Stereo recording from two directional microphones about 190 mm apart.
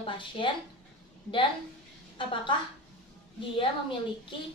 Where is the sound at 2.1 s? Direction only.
25° left (ahead or behind).